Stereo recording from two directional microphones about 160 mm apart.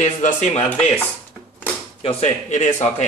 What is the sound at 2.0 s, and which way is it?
Speech, 45° left (ahead or behind).